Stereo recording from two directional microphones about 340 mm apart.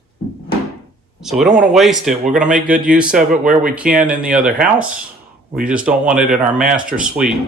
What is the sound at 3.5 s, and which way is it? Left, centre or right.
Speech, right.